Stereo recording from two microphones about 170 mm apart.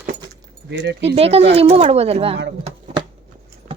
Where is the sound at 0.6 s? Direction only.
85° right.